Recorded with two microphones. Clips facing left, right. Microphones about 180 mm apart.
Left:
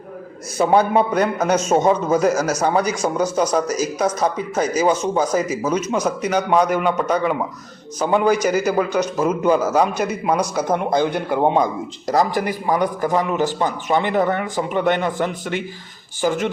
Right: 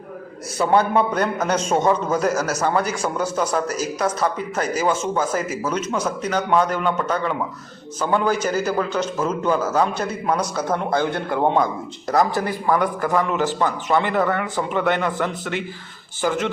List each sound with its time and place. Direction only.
0.6 s a man's voice: 10° left (ahead or behind)